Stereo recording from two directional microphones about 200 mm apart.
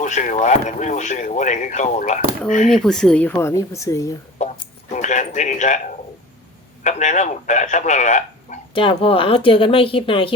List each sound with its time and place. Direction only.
0.0 s speech: 40° left (ahead or behind)
2.7 s speech: centre (ahead or behind)
4.4 s speech: 35° left (ahead or behind)
6.8 s speech: 35° left (ahead or behind)
8.7 s speech: 25° left (ahead or behind)